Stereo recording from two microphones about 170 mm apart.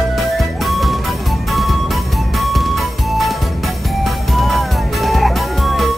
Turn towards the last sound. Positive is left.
turn(degrees=0)  # may be behind; listen again after turning